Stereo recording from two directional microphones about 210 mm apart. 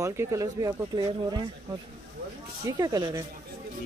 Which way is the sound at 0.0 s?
15° right (ahead or behind).